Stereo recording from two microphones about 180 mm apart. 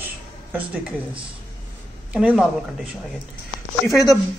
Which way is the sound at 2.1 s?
5° right (ahead or behind).